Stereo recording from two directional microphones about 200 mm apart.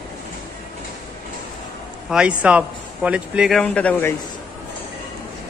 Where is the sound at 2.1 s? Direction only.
5° right (ahead or behind).